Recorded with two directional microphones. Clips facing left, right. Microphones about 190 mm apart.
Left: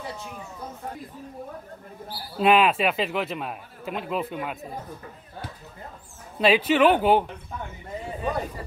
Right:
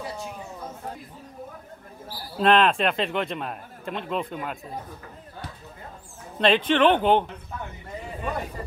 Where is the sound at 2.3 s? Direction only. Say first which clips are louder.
Even; 5° left (ahead or behind).